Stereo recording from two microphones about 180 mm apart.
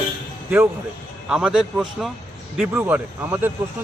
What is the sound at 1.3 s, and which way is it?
Speech, 5° right (ahead or behind).